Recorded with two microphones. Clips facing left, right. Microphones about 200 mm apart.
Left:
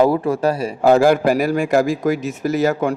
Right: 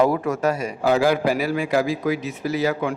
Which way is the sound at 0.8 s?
50° left (ahead or behind).